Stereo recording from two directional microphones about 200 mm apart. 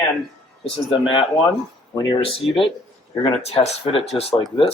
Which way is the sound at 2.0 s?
25° left (ahead or behind).